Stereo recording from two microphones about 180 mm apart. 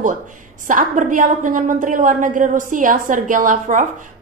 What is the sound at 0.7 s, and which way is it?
A woman's voice, 45° right (ahead or behind).